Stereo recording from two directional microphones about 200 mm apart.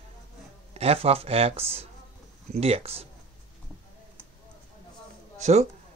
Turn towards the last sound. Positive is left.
turn(degrees=-35)  # may be behind; listen again after turning